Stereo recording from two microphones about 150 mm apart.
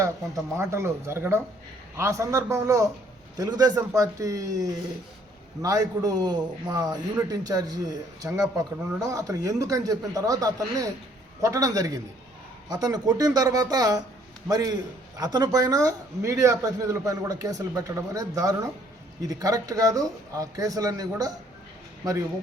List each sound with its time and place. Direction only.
0.5 s a man's voice: 20° right (ahead or behind)